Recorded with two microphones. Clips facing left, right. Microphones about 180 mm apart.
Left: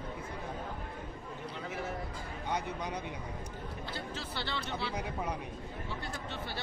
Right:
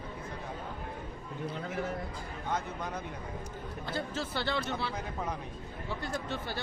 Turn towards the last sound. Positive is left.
turn(degrees=-45)  # may be behind; listen again after turning